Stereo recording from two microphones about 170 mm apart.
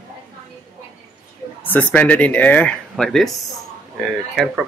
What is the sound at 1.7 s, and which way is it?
Speech, 10° left (ahead or behind).